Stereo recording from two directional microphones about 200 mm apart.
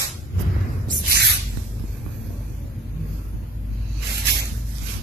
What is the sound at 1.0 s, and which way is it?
Spray, 55° right (ahead or behind).